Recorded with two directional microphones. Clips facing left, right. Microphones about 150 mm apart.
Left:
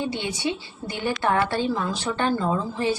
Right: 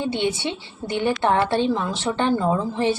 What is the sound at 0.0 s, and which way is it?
A woman's voice, 25° right (ahead or behind).